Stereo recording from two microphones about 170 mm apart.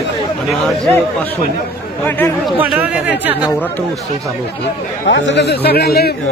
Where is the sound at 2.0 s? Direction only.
15° left (ahead or behind).